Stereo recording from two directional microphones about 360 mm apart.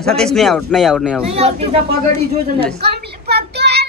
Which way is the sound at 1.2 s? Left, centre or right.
Centre.